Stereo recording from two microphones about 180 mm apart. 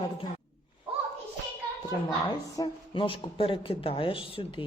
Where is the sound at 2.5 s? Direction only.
25° left (ahead or behind).